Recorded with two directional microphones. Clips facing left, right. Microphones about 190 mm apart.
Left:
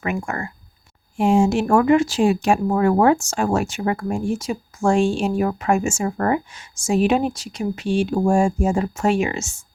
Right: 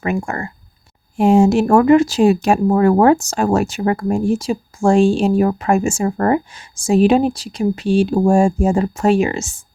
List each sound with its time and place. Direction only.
0.0 s speech: 30° right (ahead or behind)